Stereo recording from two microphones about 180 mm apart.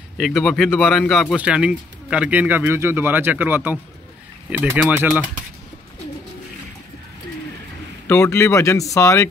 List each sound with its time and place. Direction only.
0.2 s speech: centre (ahead or behind)
8.1 s speech: 15° left (ahead or behind)